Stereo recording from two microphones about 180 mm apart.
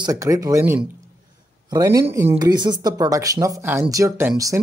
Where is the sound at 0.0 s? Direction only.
20° right (ahead or behind).